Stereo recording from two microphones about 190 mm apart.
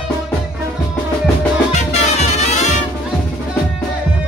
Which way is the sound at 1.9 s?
35° left (ahead or behind).